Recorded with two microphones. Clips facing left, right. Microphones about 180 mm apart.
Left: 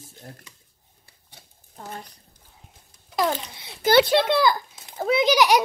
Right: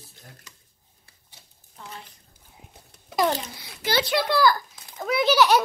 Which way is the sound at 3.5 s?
25° left (ahead or behind).